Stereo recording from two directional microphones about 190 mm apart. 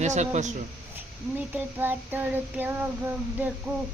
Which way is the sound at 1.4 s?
10° right (ahead or behind).